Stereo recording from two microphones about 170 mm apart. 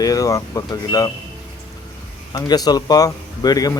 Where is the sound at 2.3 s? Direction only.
25° left (ahead or behind).